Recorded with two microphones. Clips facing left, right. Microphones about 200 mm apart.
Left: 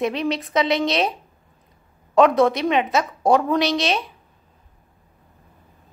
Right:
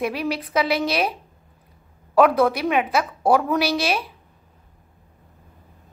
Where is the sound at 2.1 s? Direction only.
5° right (ahead or behind).